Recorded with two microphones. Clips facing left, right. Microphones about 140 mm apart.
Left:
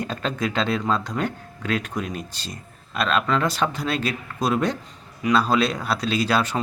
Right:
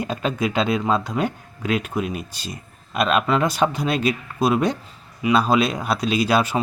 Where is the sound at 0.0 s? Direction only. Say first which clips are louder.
Right 3 dB; 10° right (ahead or behind).